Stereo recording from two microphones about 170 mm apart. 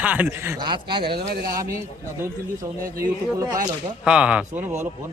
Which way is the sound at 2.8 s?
20° right (ahead or behind).